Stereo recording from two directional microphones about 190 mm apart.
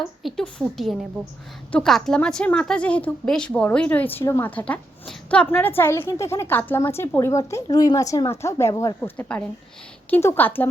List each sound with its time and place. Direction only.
0.2 s a woman's voice: centre (ahead or behind); by 9.0 s 20° left (ahead or behind)
9.0 s a woman's voice: 5° left (ahead or behind)